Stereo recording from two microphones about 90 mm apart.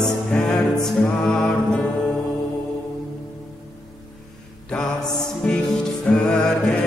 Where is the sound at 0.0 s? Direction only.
10° left (ahead or behind).